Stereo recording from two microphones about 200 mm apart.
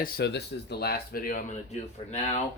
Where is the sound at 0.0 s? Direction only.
50° left (ahead or behind).